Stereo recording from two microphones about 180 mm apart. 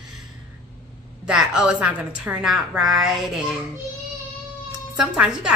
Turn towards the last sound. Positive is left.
turn(degrees=-5)  # may be behind; listen again after turning